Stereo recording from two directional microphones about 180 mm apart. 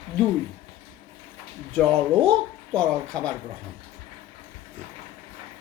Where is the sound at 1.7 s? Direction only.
5° left (ahead or behind).